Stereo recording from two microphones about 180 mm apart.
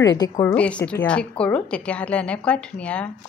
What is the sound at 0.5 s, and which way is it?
A woman's voice, 5° left (ahead or behind).